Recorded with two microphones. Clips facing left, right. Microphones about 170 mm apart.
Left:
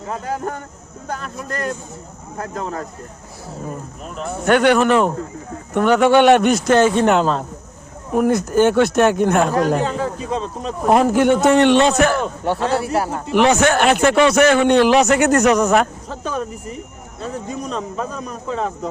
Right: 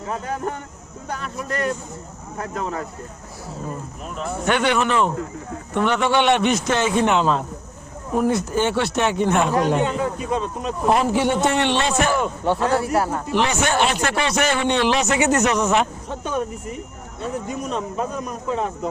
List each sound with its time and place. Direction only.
0.1 s a man's voice: 40° left (ahead or behind)
4.0 s a man's voice: 40° left (ahead or behind)
10.9 s speech: 50° left (ahead or behind)
12.5 s speech: 30° left (ahead or behind)
13.3 s speech: 55° left (ahead or behind); by 14.6 s 85° left
14.6 s speech: 50° left (ahead or behind)
14.9 s speech: 60° left (ahead or behind)
15.5 s speech: 45° left (ahead or behind)
17.2 s a man's voice: 35° left (ahead or behind)